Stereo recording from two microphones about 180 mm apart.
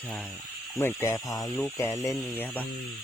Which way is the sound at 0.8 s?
15° left (ahead or behind).